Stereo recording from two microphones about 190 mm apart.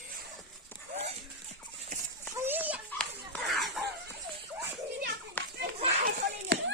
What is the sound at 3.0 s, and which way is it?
Laughter, centre (ahead or behind).